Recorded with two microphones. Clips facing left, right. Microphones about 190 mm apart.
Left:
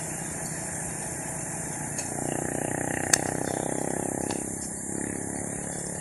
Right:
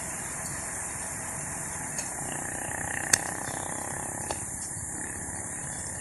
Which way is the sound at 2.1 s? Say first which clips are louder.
Left 11 dB; 40° left (ahead or behind).